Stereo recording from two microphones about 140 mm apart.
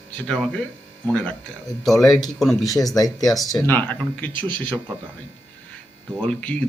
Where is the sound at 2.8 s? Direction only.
25° left (ahead or behind).